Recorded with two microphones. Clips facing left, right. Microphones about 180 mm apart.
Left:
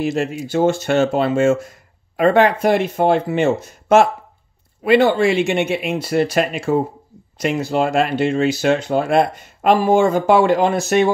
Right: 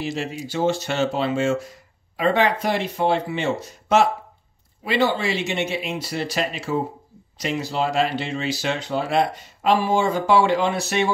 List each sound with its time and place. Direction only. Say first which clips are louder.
0.0 s speech: left 7 dB; 50° left (ahead or behind)